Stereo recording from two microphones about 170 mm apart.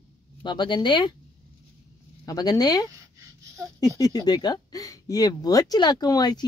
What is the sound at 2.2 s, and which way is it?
Speech, 20° left (ahead or behind).